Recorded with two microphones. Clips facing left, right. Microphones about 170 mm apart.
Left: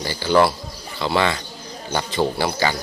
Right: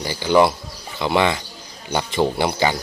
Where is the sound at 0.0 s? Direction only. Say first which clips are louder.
Right 1 dB; 15° right (ahead or behind).